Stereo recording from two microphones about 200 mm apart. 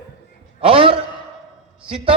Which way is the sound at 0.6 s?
25° right (ahead or behind).